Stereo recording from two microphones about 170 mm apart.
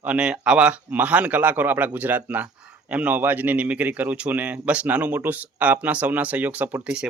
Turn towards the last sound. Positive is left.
turn(degrees=-10)  # may be behind; listen again after turning